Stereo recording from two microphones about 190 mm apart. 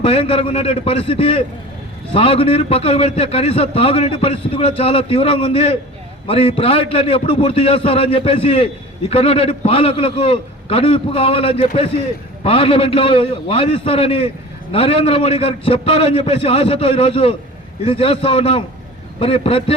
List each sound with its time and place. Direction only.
0.0 s a man's voice: 30° left (ahead or behind)